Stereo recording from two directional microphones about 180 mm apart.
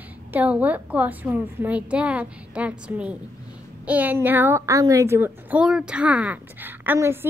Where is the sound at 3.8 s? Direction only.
10° right (ahead or behind).